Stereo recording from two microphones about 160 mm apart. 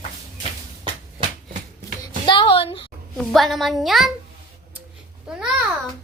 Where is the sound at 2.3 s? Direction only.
30° left (ahead or behind).